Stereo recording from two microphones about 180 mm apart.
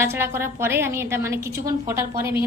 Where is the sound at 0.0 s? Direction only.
15° right (ahead or behind).